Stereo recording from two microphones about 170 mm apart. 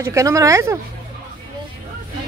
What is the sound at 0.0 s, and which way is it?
Speech, 20° right (ahead or behind).